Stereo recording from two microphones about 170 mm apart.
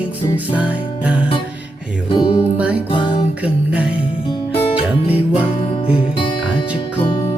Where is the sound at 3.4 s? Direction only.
10° right (ahead or behind).